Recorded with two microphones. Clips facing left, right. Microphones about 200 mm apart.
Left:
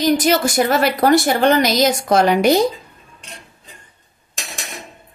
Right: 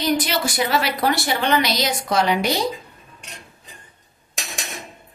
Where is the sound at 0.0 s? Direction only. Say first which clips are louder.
Left 6 dB; 45° left (ahead or behind).